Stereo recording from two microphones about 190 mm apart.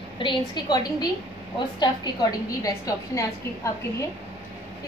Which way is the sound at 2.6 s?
15° left (ahead or behind).